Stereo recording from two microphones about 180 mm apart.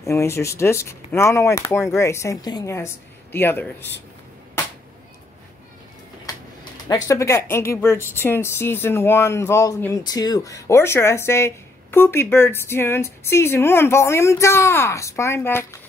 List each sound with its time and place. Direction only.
0.0 s speech: 15° left (ahead or behind)
6.9 s speech: 15° left (ahead or behind)